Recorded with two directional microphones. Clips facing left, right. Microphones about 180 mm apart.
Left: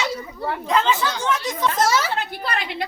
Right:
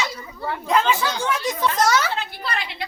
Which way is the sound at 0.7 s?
10° right (ahead or behind).